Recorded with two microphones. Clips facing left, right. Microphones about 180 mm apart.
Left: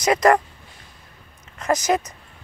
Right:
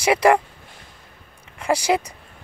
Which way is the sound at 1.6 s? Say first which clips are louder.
Even; 10° right (ahead or behind).